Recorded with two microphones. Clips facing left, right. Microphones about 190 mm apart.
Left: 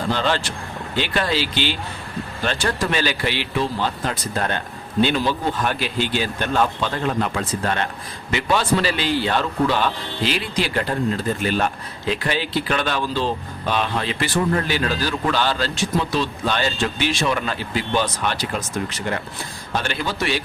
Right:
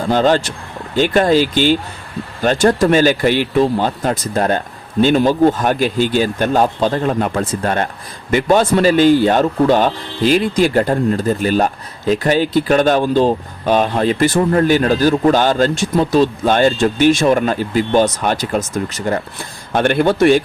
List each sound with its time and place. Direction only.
0.1 s a man's voice: 45° right (ahead or behind)
19.7 s a man's voice: 55° right (ahead or behind)